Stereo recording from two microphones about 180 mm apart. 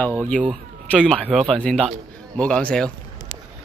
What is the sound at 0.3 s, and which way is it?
A man's voice, 5° left (ahead or behind).